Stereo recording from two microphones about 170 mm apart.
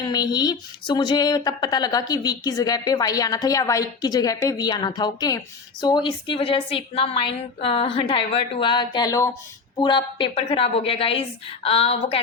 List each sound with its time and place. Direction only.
0.0 s a woman's voice: 25° left (ahead or behind)